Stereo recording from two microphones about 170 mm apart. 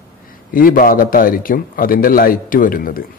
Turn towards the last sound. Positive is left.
turn(degrees=55)  # may be behind; listen again after turning